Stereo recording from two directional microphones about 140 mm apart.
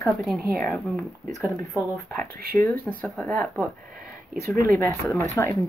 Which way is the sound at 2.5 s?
15° left (ahead or behind).